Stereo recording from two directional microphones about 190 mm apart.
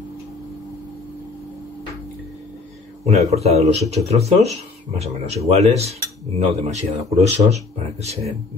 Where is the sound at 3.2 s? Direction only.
35° right (ahead or behind).